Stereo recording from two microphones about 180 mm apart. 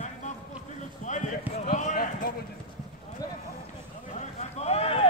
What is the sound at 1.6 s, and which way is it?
Basketball bounce, 45° left (ahead or behind).